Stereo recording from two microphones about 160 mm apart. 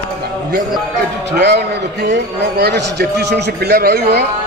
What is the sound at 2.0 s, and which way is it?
A man's voice, 90° right.